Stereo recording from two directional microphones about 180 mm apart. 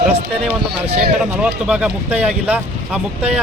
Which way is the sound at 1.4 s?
5° right (ahead or behind).